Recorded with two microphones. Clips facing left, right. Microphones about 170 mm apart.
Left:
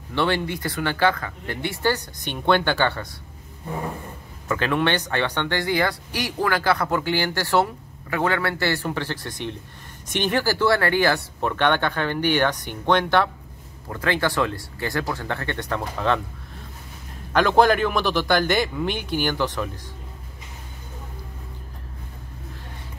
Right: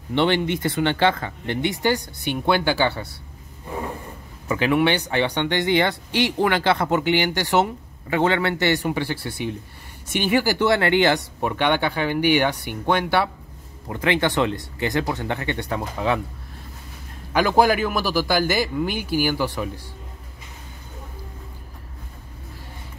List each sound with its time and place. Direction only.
0.1 s speech: 20° right (ahead or behind)
4.5 s speech: 10° right (ahead or behind)
17.3 s speech: 10° right (ahead or behind)